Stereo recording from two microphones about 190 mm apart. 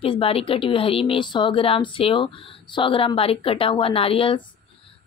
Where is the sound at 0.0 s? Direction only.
30° left (ahead or behind).